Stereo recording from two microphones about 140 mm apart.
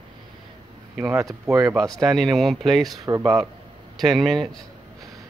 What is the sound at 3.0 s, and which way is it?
Speech, 25° right (ahead or behind).